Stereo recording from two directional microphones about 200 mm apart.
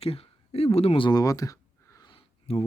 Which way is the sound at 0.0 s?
30° left (ahead or behind).